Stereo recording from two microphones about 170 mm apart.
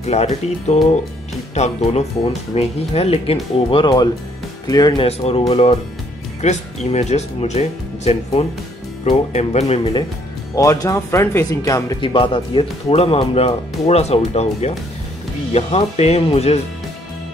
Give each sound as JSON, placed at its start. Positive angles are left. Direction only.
{"t": 0.0, "sound": "speech", "side_deg": 40}
{"t": 5.0, "sound": "speech", "side_deg": 35}
{"t": 10.5, "sound": "speech", "side_deg": 20}